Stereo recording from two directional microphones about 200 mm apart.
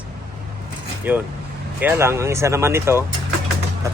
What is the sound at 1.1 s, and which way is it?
Speech, 10° right (ahead or behind).